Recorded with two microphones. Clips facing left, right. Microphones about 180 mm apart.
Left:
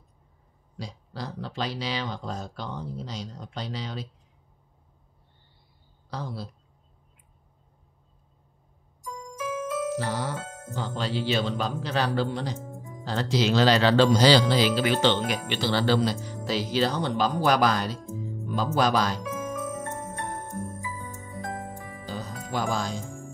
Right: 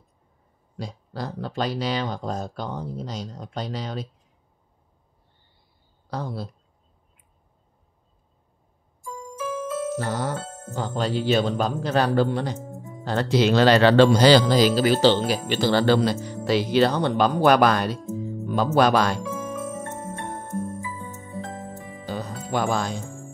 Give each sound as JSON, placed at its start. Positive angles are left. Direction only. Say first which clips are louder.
{"t": 0.7, "sound": "speech", "louder": "right 4 dB", "side_deg": -50}
{"t": 6.0, "sound": "speech", "louder": "right 4 dB", "side_deg": -50}
{"t": 9.9, "sound": "speech", "louder": "right 3 dB", "side_deg": -50}
{"t": 19.7, "sound": "music", "louder": "right 2 dB", "side_deg": -25}
{"t": 20.4, "sound": "music", "louder": "right 5 dB", "side_deg": 10}
{"t": 21.2, "sound": "music", "louder": "left 1 dB", "side_deg": -25}
{"t": 22.0, "sound": "music", "louder": "right 5 dB", "side_deg": -60}